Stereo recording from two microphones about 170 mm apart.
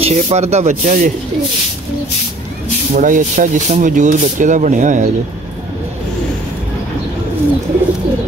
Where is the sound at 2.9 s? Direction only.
50° right (ahead or behind).